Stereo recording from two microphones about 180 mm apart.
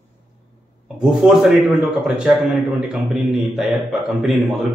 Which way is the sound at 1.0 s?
Centre (ahead or behind).